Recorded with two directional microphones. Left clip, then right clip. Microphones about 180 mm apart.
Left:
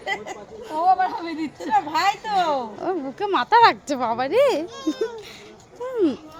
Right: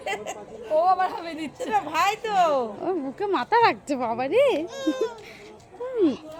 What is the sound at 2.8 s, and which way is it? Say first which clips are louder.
Speech: left 2 dB; centre (ahead or behind).